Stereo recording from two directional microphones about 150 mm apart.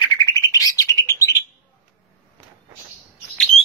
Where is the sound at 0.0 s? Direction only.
25° left (ahead or behind).